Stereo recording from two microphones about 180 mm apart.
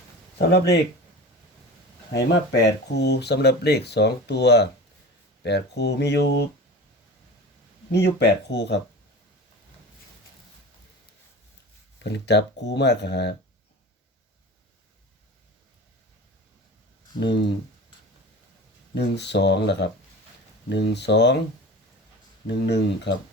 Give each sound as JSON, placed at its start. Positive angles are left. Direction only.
{"t": 0.3, "sound": "speech", "side_deg": 65}
{"t": 2.1, "sound": "speech", "side_deg": 70}
{"t": 7.9, "sound": "speech", "side_deg": 70}
{"t": 12.0, "sound": "speech", "side_deg": 70}
{"t": 17.2, "sound": "speech", "side_deg": 75}
{"t": 18.9, "sound": "speech", "side_deg": 70}
{"t": 22.4, "sound": "speech", "side_deg": 75}